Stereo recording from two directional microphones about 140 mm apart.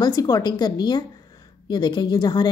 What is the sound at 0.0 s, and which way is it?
A woman's voice, 25° left (ahead or behind).